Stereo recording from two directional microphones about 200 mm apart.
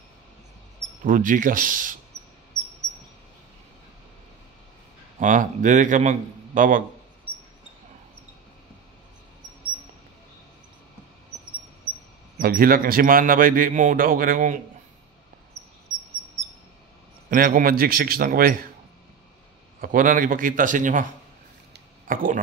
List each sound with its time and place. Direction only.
1.0 s speech: 40° right (ahead or behind)
5.2 s a man's voice: 40° right (ahead or behind)
12.4 s speech: 45° right (ahead or behind)
17.3 s speech: 45° right (ahead or behind)
19.8 s speech: 45° right (ahead or behind)